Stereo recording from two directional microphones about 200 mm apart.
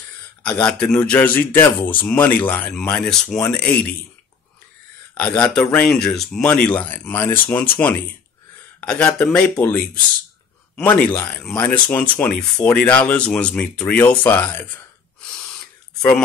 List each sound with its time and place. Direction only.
0.4 s speech: 5° left (ahead or behind)
5.1 s speech: 5° left (ahead or behind)
10.8 s speech: 10° left (ahead or behind)
16.0 s speech: 5° left (ahead or behind)